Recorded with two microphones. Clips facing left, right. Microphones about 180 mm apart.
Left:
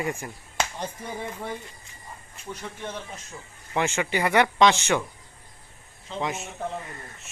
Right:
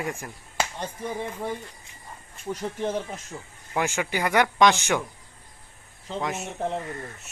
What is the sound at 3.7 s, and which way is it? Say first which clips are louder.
Speech: left 1 dB; 5° right (ahead or behind).